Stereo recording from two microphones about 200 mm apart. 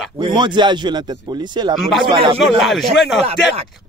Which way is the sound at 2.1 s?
25° right (ahead or behind).